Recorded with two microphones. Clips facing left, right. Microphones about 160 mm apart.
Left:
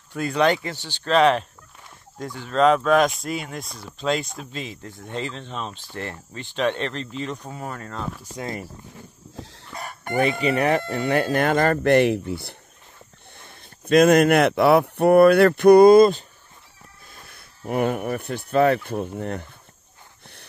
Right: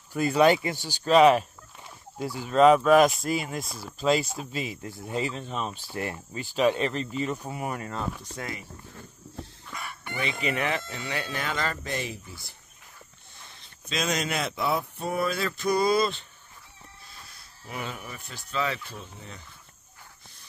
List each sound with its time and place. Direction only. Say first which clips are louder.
0.1 s speech: even; 5° right (ahead or behind)
9.4 s chicken: left 2 dB; 90° left
9.8 s chicken: left 11 dB; 45° left (ahead or behind)
10.4 s speech: left 5 dB; 35° left (ahead or behind)
10.8 s speech: left 12 dB; 55° left (ahead or behind)